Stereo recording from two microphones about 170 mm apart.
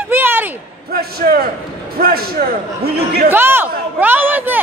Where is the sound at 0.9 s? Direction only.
60° right (ahead or behind).